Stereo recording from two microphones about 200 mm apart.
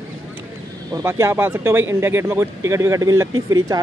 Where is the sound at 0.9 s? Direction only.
15° right (ahead or behind).